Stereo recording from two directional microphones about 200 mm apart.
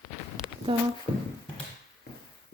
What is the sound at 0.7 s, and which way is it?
Speech, 25° right (ahead or behind).